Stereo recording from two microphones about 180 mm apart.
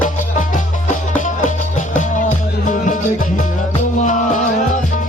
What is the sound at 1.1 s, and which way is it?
Music, 45° left (ahead or behind).